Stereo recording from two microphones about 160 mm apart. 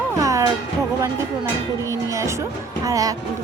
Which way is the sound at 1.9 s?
20° right (ahead or behind).